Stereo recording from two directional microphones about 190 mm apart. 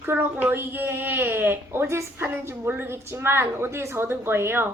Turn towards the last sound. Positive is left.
turn(degrees=-10)  # may be behind; listen again after turning